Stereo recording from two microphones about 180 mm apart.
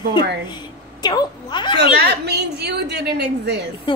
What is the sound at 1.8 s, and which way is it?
A woman's voice, 70° right (ahead or behind).